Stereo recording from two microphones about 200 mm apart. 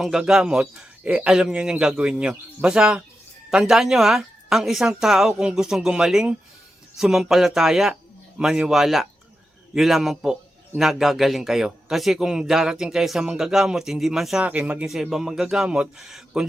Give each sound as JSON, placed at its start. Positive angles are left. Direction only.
{"t": 0.0, "sound": "a man's voice", "side_deg": 0}